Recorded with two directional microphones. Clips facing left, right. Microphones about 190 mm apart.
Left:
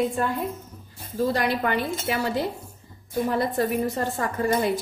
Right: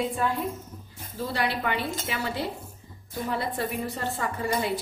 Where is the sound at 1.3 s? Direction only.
45° left (ahead or behind).